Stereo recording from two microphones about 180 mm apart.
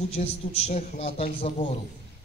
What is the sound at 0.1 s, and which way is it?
A man's voice, 35° left (ahead or behind).